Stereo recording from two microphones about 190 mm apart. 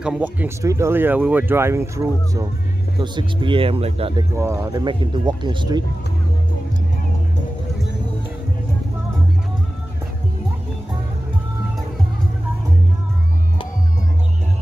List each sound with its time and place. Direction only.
0.0 s speech: 5° right (ahead or behind); by 4.3 s 30° right (ahead or behind)
4.4 s speech: 15° right (ahead or behind)